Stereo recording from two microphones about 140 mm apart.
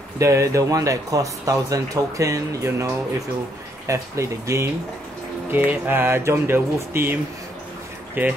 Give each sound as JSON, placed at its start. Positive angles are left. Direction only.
{"t": 0.2, "sound": "speech", "side_deg": -20}